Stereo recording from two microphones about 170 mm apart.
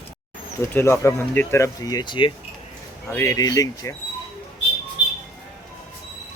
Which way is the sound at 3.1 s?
15° left (ahead or behind).